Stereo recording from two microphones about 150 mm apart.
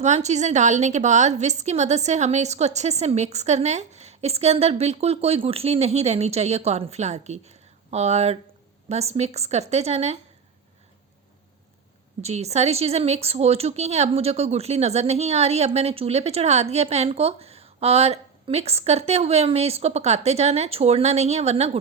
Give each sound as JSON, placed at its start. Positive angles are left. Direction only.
{"t": 0.0, "sound": "speech", "side_deg": -50}
{"t": 12.2, "sound": "speech", "side_deg": -45}